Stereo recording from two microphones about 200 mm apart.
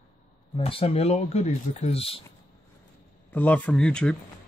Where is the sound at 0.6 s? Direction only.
30° left (ahead or behind).